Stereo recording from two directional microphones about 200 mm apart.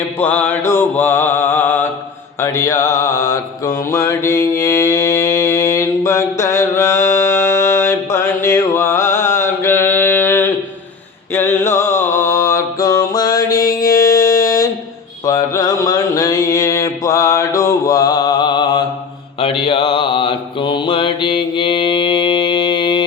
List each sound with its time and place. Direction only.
0.2 s mantra: 10° left (ahead or behind)
11.3 s a sound: 10° left (ahead or behind)
12.1 s mantra: 15° left (ahead or behind)